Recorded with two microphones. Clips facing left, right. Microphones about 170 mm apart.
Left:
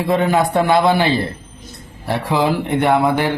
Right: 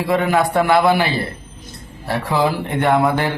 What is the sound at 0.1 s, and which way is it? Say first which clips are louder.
A man's voice: left 1 dB; 20° left (ahead or behind).